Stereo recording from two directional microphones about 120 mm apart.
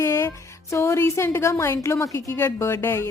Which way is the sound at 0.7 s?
20° left (ahead or behind).